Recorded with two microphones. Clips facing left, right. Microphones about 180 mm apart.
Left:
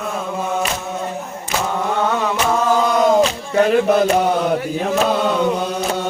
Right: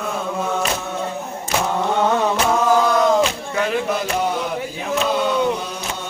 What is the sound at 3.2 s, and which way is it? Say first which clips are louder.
Music: left 5 dB; 40° left (ahead or behind).